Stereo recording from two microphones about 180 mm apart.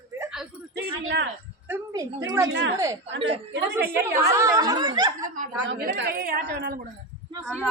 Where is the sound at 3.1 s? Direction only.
90° right.